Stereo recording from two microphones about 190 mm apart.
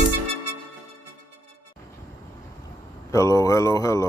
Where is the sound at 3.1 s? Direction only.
15° left (ahead or behind).